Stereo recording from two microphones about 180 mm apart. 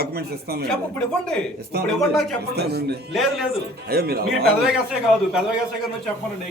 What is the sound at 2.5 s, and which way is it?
Speech, 65° right (ahead or behind).